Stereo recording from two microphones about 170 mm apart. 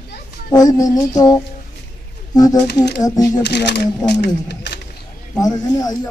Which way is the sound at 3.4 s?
85° left.